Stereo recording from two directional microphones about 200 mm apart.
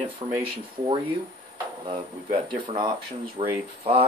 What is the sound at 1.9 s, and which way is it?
Speech, 25° right (ahead or behind).